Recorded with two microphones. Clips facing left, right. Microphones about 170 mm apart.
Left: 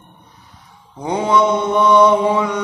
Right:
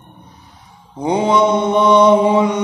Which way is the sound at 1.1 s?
20° right (ahead or behind).